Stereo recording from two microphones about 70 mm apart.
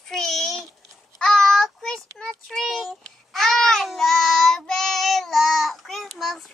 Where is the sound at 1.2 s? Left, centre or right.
Centre.